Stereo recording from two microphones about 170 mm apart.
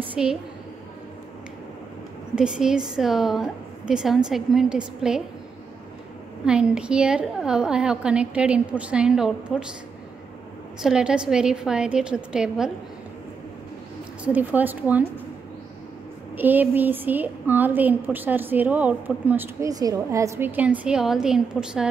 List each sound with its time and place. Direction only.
0.0 s a sound: 5° right (ahead or behind)
2.3 s a woman's voice: 5° right (ahead or behind)
6.4 s a woman's voice: 5° right (ahead or behind)
10.8 s a woman's voice: 5° right (ahead or behind)
14.2 s a woman's voice: 10° right (ahead or behind)
16.3 s a woman's voice: 10° right (ahead or behind)